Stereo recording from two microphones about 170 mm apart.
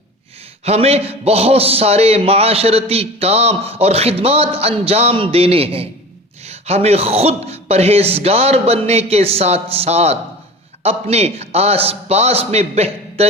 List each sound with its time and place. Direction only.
0.6 s a man's voice: 35° right (ahead or behind)